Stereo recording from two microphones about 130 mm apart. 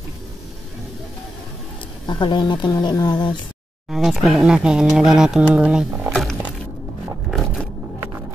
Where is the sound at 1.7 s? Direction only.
40° left (ahead or behind).